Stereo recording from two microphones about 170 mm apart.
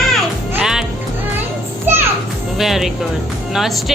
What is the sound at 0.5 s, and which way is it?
Music, 5° right (ahead or behind).